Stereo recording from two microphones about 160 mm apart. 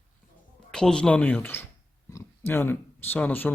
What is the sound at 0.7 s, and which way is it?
Speech, 5° left (ahead or behind).